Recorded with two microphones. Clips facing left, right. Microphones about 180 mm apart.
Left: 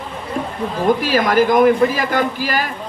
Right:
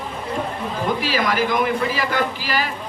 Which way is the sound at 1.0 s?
50° left (ahead or behind).